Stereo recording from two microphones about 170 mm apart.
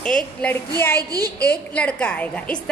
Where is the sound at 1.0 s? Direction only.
20° right (ahead or behind).